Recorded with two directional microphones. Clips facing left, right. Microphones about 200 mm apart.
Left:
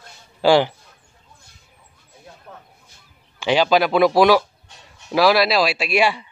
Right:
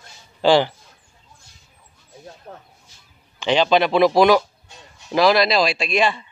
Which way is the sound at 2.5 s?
30° right (ahead or behind).